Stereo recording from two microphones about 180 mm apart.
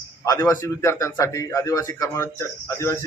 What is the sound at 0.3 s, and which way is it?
A man's voice, 15° left (ahead or behind).